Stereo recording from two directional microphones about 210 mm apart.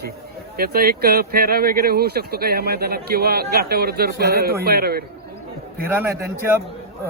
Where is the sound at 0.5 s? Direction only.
45° right (ahead or behind).